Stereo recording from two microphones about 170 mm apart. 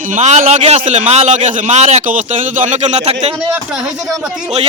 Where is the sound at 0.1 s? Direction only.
45° right (ahead or behind).